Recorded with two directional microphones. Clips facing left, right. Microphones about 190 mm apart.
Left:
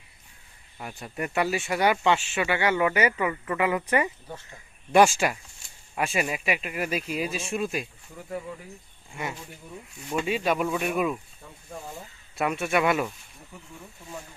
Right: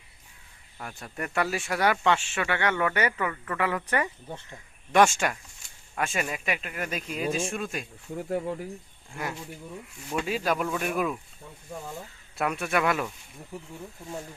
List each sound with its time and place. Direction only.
0.8 s speech: 10° left (ahead or behind)
8.1 s speech: 55° right (ahead or behind)
9.2 s speech: centre (ahead or behind)
12.4 s speech: centre (ahead or behind)